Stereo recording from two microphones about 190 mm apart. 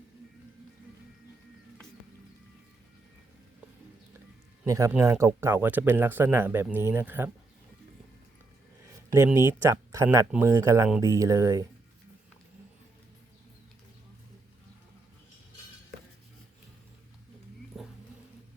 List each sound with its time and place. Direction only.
4.6 s speech: 15° right (ahead or behind)
9.1 s speech: 15° right (ahead or behind)
17.7 s a sound: centre (ahead or behind)